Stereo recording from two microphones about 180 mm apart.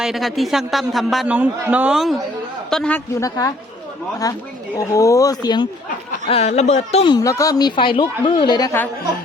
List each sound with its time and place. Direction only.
0.0 s a man's voice: centre (ahead or behind)
3.2 s a woman's voice: 20° left (ahead or behind)
6.2 s speech: 35° left (ahead or behind)
7.1 s a woman's voice: 20° left (ahead or behind)